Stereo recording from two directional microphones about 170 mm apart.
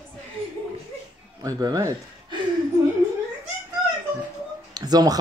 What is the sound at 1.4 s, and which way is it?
Speech, 20° right (ahead or behind).